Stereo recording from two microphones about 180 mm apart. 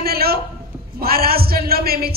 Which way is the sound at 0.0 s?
60° right (ahead or behind).